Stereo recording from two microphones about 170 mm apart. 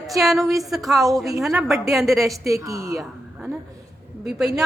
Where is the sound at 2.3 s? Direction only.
20° right (ahead or behind).